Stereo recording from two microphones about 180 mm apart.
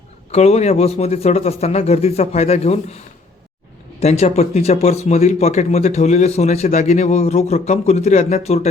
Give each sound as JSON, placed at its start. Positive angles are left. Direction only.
{"t": 0.3, "sound": "speech", "side_deg": 35}
{"t": 4.0, "sound": "speech", "side_deg": 35}